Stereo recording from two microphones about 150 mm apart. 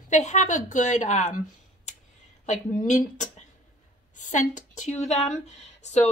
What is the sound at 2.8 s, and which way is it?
Speech, 55° left (ahead or behind).